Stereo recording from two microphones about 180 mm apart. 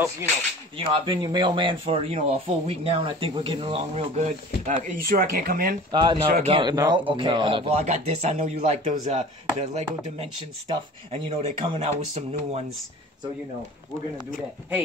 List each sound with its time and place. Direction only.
0.7 s speech: 25° right (ahead or behind); by 5.8 s 55° right (ahead or behind)
5.9 s speech: 25° right (ahead or behind)